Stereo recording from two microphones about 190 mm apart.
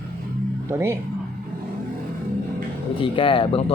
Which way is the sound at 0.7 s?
15° right (ahead or behind).